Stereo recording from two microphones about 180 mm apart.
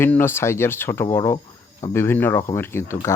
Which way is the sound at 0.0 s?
10° left (ahead or behind).